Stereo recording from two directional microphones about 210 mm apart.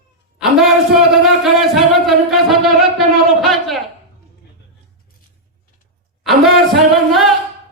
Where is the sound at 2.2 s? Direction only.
Centre (ahead or behind).